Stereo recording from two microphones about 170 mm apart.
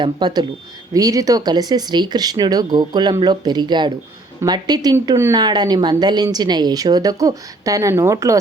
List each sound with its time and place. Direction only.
0.0 s speech: 25° right (ahead or behind)